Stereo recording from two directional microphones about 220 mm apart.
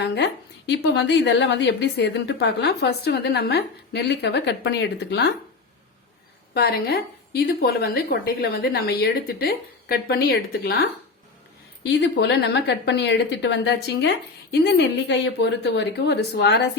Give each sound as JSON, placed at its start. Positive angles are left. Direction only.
{"t": 0.0, "sound": "a woman's voice", "side_deg": 50}
{"t": 6.5, "sound": "a woman's voice", "side_deg": 45}
{"t": 11.8, "sound": "a woman's voice", "side_deg": 55}